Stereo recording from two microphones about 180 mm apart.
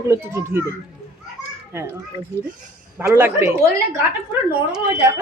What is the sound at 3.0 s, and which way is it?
Speech, 15° right (ahead or behind).